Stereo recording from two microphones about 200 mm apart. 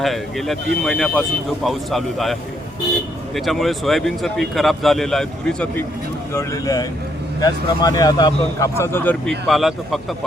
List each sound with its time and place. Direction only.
0.0 s speech: centre (ahead or behind)
3.3 s speech: centre (ahead or behind)
6.3 s speech: 15° left (ahead or behind); by 10.0 s centre (ahead or behind)